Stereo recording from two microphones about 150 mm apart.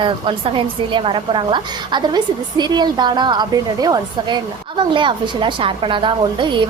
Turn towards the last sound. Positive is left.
turn(degrees=-30)  # may be behind; listen again after turning